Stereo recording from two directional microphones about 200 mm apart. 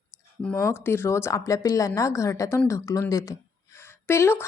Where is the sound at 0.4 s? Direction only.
10° left (ahead or behind).